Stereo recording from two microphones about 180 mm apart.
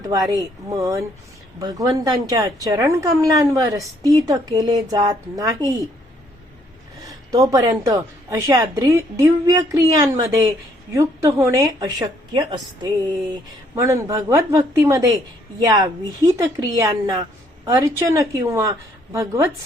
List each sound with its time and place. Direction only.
0.0 s a woman's voice: 20° right (ahead or behind)
7.1 s a woman's voice: 20° right (ahead or behind)